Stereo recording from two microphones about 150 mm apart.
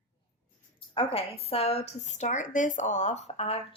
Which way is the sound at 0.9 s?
35° left (ahead or behind).